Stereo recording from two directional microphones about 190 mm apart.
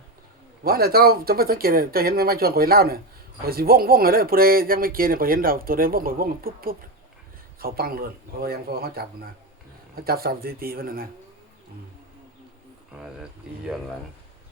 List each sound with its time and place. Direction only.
0.6 s speech: 55° right (ahead or behind)